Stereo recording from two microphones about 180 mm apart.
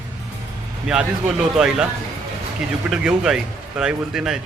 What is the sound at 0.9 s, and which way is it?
Speech, 5° right (ahead or behind).